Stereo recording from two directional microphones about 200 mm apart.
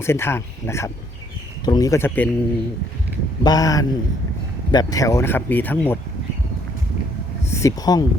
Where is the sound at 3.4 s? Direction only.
20° left (ahead or behind).